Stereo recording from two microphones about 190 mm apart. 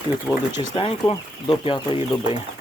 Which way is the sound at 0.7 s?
30° left (ahead or behind).